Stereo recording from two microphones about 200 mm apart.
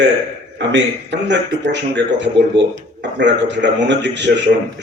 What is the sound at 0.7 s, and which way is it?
Speech, 60° right (ahead or behind).